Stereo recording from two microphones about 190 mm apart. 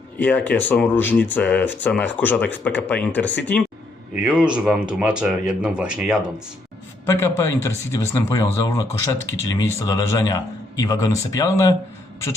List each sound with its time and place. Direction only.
0.2 s speech: 10° left (ahead or behind)
4.1 s speech: 5° right (ahead or behind)
7.0 s speech: 15° left (ahead or behind)